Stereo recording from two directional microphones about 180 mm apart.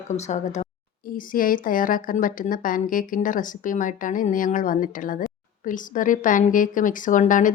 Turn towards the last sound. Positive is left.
turn(degrees=45)  # may be behind; listen again after turning